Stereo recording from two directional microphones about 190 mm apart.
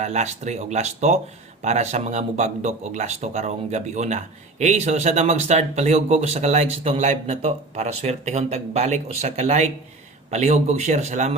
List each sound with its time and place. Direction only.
0.0 s speech: 35° right (ahead or behind)